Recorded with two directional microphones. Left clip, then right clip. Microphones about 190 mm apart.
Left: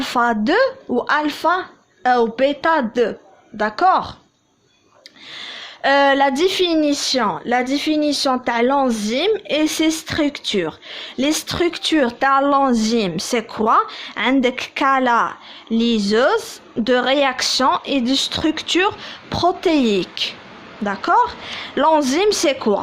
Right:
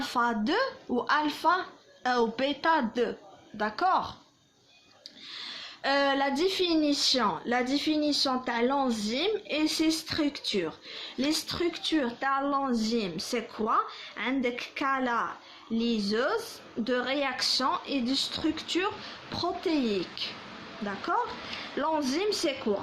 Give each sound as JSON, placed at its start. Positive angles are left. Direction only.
{"t": 0.0, "sound": "a woman's voice", "side_deg": 35}
{"t": 5.3, "sound": "a woman's voice", "side_deg": 40}